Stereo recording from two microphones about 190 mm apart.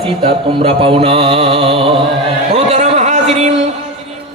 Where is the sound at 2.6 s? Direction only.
35° right (ahead or behind).